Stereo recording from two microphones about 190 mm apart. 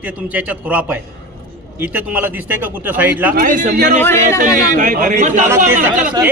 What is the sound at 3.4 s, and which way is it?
Speech, 45° right (ahead or behind).